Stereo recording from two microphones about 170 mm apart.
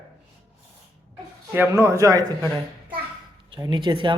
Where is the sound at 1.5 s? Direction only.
15° right (ahead or behind).